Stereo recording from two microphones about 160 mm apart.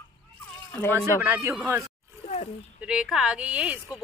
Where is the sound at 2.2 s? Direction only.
45° left (ahead or behind).